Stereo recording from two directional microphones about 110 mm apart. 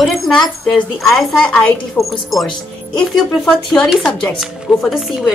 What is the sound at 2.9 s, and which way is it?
A woman's voice, 5° left (ahead or behind).